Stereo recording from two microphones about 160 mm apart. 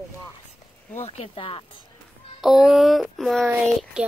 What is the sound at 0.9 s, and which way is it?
Speech, 40° left (ahead or behind).